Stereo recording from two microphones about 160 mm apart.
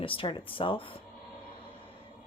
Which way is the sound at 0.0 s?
35° left (ahead or behind).